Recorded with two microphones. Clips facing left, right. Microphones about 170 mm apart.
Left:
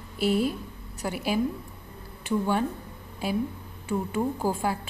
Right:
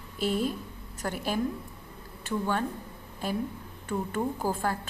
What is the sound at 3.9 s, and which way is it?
Speech, 10° left (ahead or behind).